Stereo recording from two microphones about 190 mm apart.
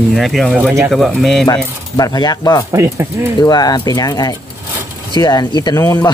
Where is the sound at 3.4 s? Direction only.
20° left (ahead or behind).